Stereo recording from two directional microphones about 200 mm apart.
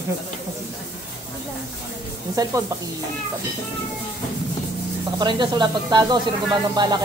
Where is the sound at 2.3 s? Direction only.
15° right (ahead or behind).